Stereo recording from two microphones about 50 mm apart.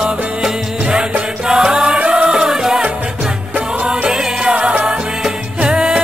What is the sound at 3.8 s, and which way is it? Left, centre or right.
Music, centre.